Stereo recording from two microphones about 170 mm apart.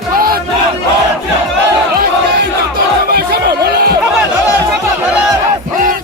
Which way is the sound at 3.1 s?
65° right (ahead or behind).